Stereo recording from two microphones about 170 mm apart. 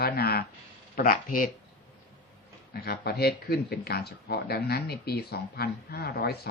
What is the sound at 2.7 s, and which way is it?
Speech, 65° left (ahead or behind).